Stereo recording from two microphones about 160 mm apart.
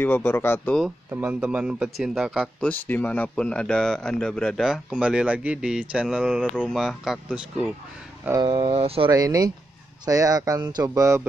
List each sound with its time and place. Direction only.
0.0 s speech: 15° left (ahead or behind)
1.1 s speech: 10° right (ahead or behind)
2.6 s speech: 10° left (ahead or behind); by 7.7 s 5° right (ahead or behind)
8.3 s speech: 25° right (ahead or behind)
9.1 s speech: 25° right (ahead or behind)